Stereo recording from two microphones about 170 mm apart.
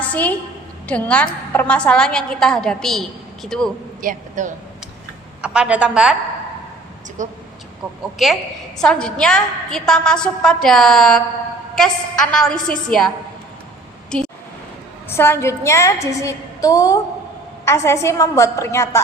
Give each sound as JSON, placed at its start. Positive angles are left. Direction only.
{"t": 0.0, "sound": "a woman's voice", "side_deg": 10}
{"t": 4.0, "sound": "a man's voice", "side_deg": -50}
{"t": 5.4, "sound": "a woman's voice", "side_deg": -5}
{"t": 7.2, "sound": "a man's voice", "side_deg": -45}
{"t": 8.8, "sound": "a woman's voice", "side_deg": 5}
{"t": 14.1, "sound": "a woman's voice", "side_deg": 5}